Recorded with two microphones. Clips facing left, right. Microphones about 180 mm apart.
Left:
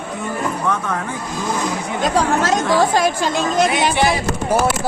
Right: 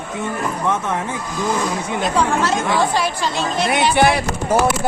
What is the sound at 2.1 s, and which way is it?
A woman's voice, 40° left (ahead or behind).